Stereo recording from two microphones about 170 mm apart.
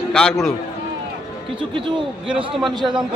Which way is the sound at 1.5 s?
30° right (ahead or behind).